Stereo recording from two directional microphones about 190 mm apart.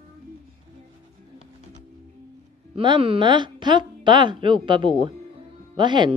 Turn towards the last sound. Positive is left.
turn(degrees=-25)  # may be behind; listen again after turning